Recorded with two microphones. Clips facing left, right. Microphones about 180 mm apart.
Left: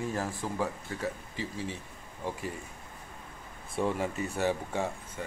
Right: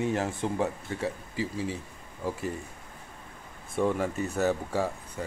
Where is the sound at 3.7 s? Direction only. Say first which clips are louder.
Right 3 dB; 45° right (ahead or behind).